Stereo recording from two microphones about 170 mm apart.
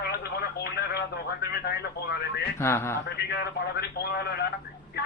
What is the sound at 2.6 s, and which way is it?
Speech, 15° left (ahead or behind).